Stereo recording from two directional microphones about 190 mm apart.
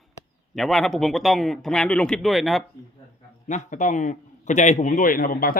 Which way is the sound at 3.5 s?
40° left (ahead or behind).